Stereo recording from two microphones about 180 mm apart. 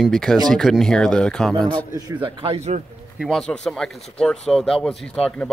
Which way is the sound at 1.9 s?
20° right (ahead or behind).